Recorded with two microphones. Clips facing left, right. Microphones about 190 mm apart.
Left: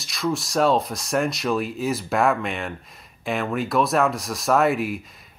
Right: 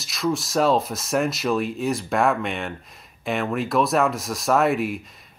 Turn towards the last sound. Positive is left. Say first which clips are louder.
# right 1 dB
turn(degrees=0)  # may be behind; listen again after turning